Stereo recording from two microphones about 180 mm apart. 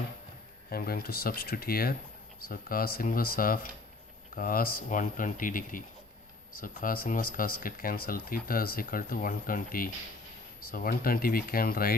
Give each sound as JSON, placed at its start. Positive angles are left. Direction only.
{"t": 0.7, "sound": "speech", "side_deg": 55}